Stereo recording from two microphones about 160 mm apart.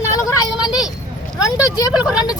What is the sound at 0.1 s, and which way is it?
Vehicle, 20° left (ahead or behind).